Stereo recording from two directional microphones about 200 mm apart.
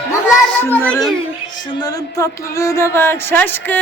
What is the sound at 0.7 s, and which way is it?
Music, 5° left (ahead or behind).